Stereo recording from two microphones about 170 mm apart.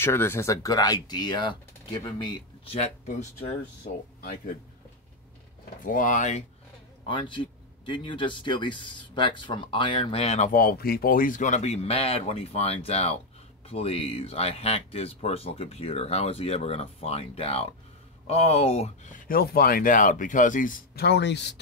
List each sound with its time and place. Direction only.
0.0 s speech: 15° left (ahead or behind); by 2.9 s 35° left (ahead or behind)
5.9 s speech: 50° left (ahead or behind)
7.1 s speech: 30° left (ahead or behind); by 21.5 s 90° left